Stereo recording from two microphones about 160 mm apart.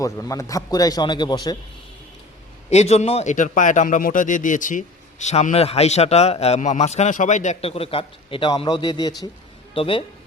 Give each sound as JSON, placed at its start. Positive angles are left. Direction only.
{"t": 0.0, "sound": "a man's voice", "side_deg": 20}
{"t": 2.6, "sound": "a man's voice", "side_deg": 45}